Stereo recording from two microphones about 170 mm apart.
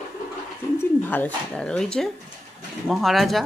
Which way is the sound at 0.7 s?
10° left (ahead or behind).